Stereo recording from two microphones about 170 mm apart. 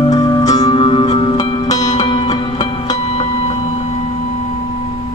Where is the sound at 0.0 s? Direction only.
20° left (ahead or behind).